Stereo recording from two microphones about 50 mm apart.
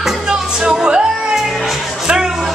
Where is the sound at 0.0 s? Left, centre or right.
Centre.